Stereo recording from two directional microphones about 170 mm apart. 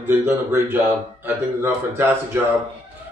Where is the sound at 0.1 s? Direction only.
15° right (ahead or behind).